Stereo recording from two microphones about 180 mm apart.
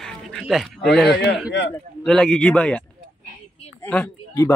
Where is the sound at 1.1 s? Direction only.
65° left (ahead or behind).